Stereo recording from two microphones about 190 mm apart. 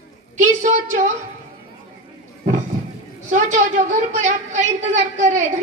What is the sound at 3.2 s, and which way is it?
A woman's voice, 40° right (ahead or behind).